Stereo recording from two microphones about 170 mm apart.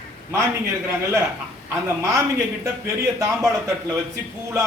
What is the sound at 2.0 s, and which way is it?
Speech, 15° right (ahead or behind).